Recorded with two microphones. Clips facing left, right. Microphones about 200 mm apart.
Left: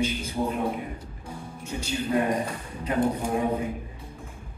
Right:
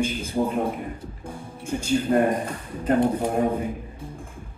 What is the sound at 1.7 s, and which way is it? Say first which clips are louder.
A man's voice: right 6 dB; 50° right (ahead or behind).